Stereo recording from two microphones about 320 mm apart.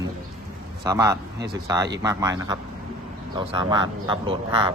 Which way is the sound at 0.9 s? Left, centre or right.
Centre.